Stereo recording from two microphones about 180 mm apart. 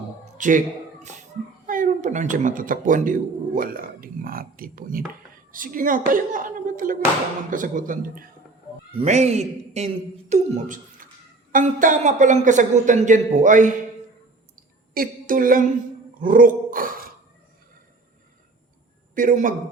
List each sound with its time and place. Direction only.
0.3 s speech: 45° right (ahead or behind)
1.6 s a woman's voice: 50° right (ahead or behind)
8.9 s a woman's voice: 35° right (ahead or behind)
14.5 s clicking: 50° right (ahead or behind)
16.1 s a sound: 50° right (ahead or behind)
19.1 s a woman's voice: 45° right (ahead or behind)